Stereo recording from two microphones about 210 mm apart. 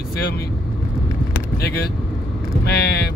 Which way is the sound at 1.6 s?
50° left (ahead or behind).